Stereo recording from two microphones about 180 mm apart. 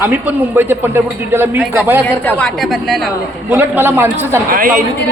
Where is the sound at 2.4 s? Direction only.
Centre (ahead or behind).